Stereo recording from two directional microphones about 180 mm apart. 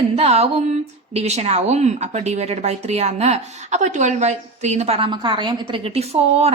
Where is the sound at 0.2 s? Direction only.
35° right (ahead or behind).